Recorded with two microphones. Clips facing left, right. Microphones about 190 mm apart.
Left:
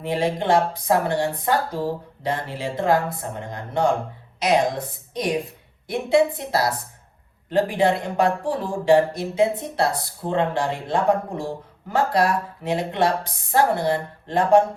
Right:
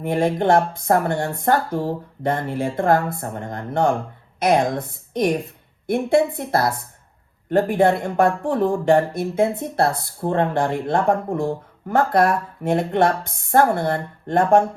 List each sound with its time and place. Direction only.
0.0 s speech: 55° right (ahead or behind)